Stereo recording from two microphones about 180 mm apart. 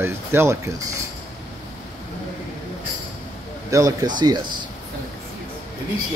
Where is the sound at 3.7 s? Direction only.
20° right (ahead or behind).